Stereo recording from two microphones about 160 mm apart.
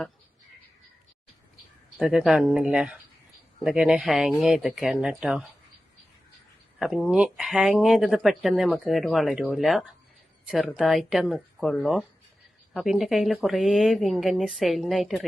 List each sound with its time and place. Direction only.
2.0 s speech: 5° right (ahead or behind)
6.7 s speech: 5° right (ahead or behind)